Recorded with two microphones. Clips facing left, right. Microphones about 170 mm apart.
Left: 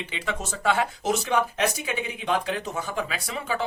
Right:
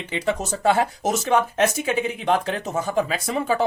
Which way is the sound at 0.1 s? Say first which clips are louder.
Right 7 dB; 40° right (ahead or behind).